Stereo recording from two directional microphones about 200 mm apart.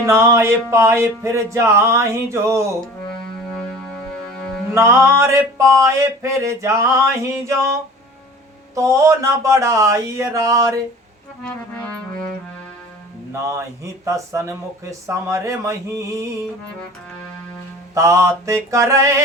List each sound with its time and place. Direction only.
0.0 s speech: 15° right (ahead or behind)
4.7 s speech: 15° right (ahead or behind)
11.4 s music: 10° left (ahead or behind)
13.3 s speech: 15° right (ahead or behind)
17.9 s speech: 15° right (ahead or behind)